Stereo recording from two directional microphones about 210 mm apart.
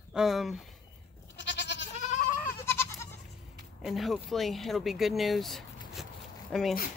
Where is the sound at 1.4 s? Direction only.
55° left (ahead or behind).